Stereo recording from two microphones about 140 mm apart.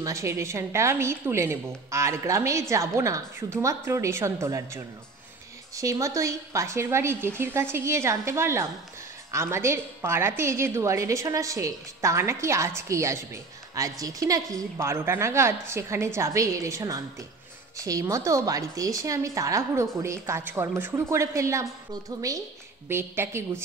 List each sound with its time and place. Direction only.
0.0 s a woman's voice: 20° right (ahead or behind)